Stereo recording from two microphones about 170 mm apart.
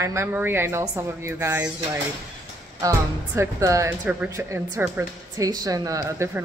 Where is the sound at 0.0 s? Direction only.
15° right (ahead or behind).